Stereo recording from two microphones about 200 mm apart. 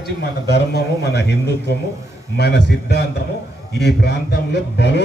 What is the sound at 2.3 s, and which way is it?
Speech, 55° left (ahead or behind).